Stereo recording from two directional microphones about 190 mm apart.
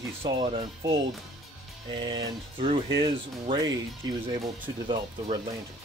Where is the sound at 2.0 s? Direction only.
25° right (ahead or behind).